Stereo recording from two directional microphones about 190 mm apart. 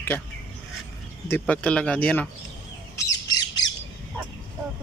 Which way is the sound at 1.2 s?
10° left (ahead or behind).